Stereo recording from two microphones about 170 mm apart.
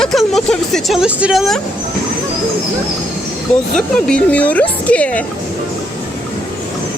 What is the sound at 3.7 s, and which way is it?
Speech, 5° left (ahead or behind).